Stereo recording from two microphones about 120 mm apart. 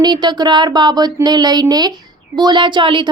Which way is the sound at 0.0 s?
35° right (ahead or behind).